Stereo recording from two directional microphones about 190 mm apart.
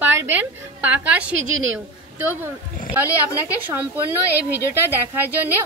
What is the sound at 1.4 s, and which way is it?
Speech, 90° right.